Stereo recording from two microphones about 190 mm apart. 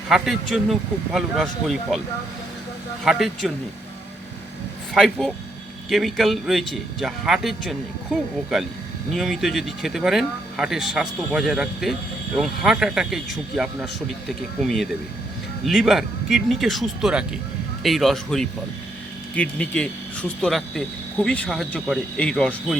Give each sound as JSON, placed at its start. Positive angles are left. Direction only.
{"t": 0.1, "sound": "speech", "side_deg": 0}
{"t": 3.0, "sound": "speech", "side_deg": 0}
{"t": 4.9, "sound": "speech", "side_deg": 0}